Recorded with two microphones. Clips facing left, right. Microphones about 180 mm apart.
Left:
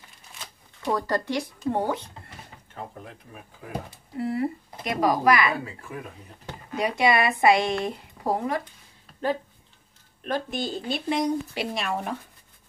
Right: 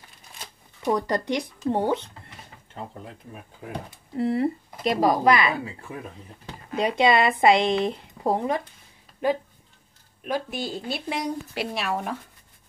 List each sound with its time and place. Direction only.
0.8 s speech: 20° right (ahead or behind)
4.2 s speech: 25° right (ahead or behind)
10.2 s speech: 10° right (ahead or behind)